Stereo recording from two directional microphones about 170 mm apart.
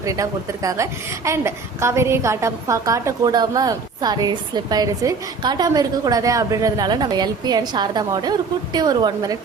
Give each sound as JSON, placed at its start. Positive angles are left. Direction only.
{"t": 0.0, "sound": "a woman's voice", "side_deg": -20}